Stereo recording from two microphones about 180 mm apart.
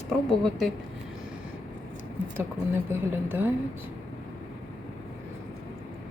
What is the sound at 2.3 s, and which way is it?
A woman's voice, 15° right (ahead or behind).